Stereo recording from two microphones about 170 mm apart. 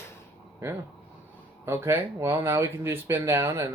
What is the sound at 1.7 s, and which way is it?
Speech, 15° right (ahead or behind).